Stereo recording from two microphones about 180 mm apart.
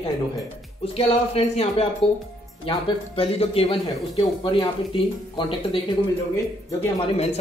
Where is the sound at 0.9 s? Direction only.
35° left (ahead or behind).